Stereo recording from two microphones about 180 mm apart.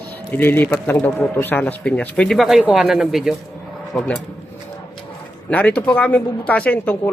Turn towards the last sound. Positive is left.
turn(degrees=10)  # may be behind; listen again after turning